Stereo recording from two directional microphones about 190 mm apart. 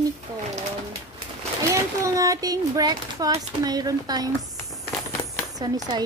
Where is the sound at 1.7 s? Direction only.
15° right (ahead or behind).